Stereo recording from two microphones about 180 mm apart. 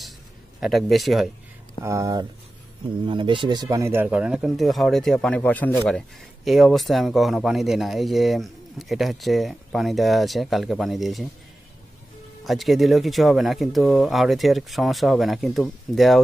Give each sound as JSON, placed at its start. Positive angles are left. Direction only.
{"t": 0.6, "sound": "speech", "side_deg": 0}
{"t": 1.9, "sound": "speech", "side_deg": -20}
{"t": 12.4, "sound": "speech", "side_deg": 0}